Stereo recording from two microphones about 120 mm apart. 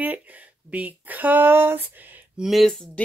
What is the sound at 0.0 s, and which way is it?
Speech, 15° right (ahead or behind).